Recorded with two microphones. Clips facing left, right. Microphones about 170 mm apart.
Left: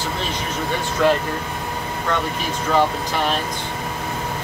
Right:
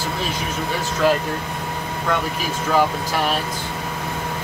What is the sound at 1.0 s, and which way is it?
Speech, 5° right (ahead or behind).